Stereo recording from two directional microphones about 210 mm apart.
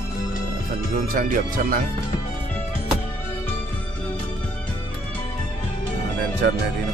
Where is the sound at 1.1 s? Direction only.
40° right (ahead or behind).